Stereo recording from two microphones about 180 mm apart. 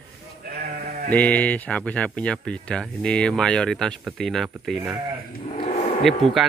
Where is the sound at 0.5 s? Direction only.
60° right (ahead or behind).